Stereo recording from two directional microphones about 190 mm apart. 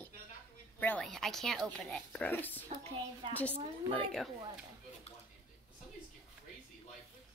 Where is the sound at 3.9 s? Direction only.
5° left (ahead or behind).